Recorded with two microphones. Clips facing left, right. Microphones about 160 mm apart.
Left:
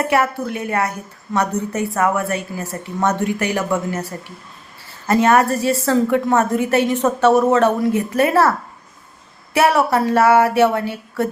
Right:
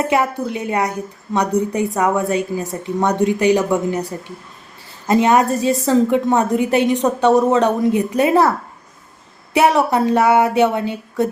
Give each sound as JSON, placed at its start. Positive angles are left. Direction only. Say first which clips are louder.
{"t": 0.0, "sound": "a woman's voice", "louder": "even", "side_deg": -20}